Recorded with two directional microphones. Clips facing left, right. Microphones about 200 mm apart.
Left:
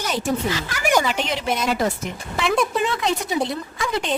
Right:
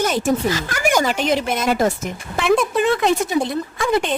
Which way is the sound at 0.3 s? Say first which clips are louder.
Right 4 dB; 45° right (ahead or behind).